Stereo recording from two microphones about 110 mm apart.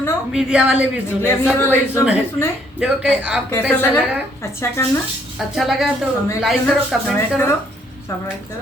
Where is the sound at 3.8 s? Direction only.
20° left (ahead or behind).